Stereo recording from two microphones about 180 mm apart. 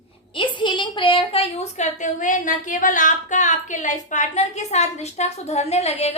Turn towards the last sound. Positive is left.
turn(degrees=35)  # may be behind; listen again after turning